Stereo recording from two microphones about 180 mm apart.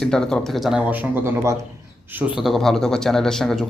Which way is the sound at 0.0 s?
5° left (ahead or behind).